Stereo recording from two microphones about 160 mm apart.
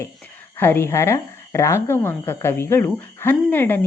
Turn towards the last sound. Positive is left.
turn(degrees=10)  # may be behind; listen again after turning